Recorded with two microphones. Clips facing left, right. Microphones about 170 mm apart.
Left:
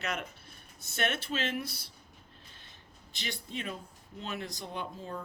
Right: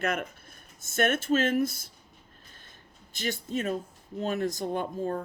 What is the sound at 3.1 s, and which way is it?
Speech, 45° right (ahead or behind).